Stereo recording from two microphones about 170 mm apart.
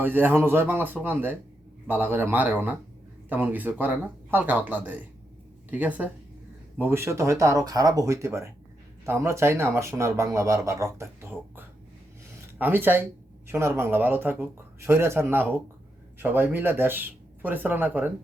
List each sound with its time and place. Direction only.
0.0 s speech: 10° right (ahead or behind)